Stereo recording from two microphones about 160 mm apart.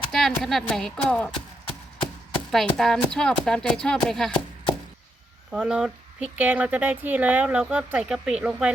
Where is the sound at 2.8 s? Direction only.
5° left (ahead or behind).